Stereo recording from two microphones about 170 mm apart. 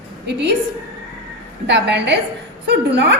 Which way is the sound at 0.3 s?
85° right.